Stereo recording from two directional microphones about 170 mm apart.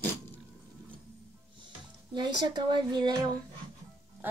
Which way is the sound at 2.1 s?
25° right (ahead or behind).